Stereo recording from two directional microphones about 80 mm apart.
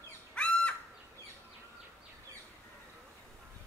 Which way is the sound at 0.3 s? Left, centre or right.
Centre.